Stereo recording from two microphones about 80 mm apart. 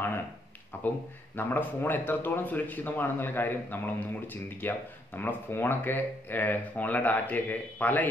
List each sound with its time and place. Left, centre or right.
0.8 s speech: left